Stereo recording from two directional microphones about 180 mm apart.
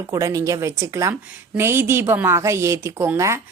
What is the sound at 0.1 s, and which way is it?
A woman's voice, 20° right (ahead or behind).